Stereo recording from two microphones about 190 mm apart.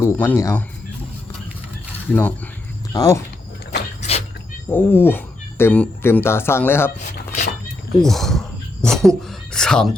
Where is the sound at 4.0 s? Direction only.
35° left (ahead or behind).